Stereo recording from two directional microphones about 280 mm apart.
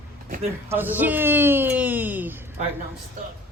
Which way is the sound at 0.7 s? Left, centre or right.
Centre.